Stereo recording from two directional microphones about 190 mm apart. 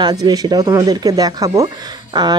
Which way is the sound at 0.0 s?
20° right (ahead or behind).